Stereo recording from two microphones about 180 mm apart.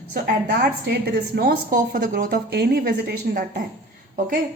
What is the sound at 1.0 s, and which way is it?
Speech, 60° right (ahead or behind).